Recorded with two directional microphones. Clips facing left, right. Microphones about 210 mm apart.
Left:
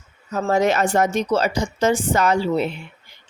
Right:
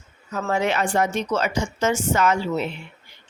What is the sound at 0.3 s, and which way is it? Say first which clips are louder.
A woman's voice: left 4 dB; 35° left (ahead or behind).